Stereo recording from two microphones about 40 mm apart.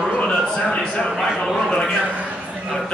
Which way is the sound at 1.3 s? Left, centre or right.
Centre.